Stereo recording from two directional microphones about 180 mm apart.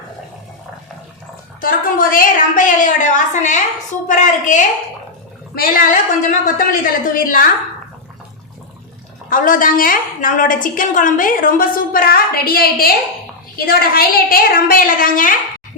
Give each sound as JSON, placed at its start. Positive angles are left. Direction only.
{"t": 1.6, "sound": "a woman's voice", "side_deg": 50}
{"t": 9.3, "sound": "a woman's voice", "side_deg": 50}